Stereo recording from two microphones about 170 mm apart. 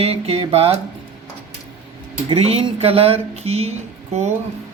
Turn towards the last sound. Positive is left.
turn(degrees=-40)  # may be behind; listen again after turning